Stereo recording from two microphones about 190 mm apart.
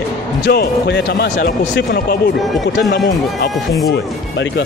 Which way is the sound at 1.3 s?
40° left (ahead or behind).